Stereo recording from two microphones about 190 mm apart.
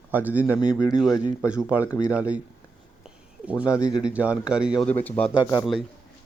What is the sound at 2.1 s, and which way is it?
Speech, 5° right (ahead or behind).